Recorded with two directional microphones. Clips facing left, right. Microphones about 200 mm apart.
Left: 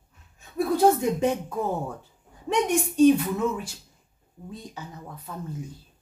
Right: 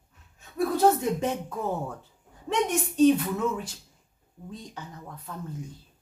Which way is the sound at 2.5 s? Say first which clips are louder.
Left 3 dB; 10° left (ahead or behind).